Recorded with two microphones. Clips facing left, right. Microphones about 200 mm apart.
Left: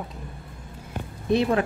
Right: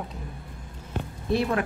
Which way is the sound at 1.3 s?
20° left (ahead or behind).